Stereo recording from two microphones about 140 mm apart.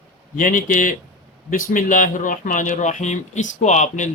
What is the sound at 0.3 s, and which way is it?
Speech, 70° left (ahead or behind).